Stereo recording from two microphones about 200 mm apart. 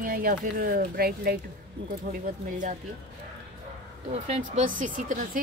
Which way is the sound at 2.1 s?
40° right (ahead or behind).